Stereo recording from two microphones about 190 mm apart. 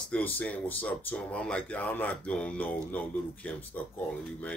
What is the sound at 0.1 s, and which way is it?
Speech, 10° left (ahead or behind).